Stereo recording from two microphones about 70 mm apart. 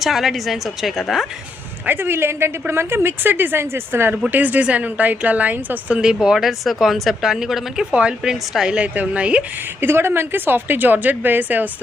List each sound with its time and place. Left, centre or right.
0.0 s a woman's voice: centre
1.9 s a woman's voice: right
6.0 s a woman's voice: centre
9.8 s a woman's voice: right